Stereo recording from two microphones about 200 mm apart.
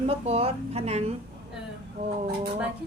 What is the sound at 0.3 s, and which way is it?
Speech, 30° right (ahead or behind).